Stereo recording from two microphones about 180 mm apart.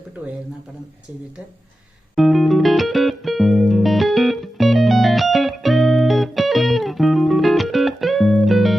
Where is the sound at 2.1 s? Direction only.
Centre (ahead or behind).